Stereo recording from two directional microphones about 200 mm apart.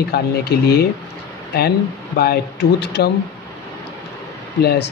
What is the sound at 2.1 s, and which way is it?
Speech, 50° left (ahead or behind).